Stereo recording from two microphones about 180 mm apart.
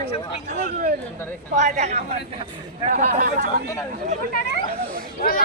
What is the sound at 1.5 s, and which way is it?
Speech, 40° right (ahead or behind).